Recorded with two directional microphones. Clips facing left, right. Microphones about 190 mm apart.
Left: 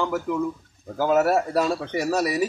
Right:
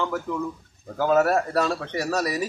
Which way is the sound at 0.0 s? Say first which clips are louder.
Left 3 dB; 10° left (ahead or behind).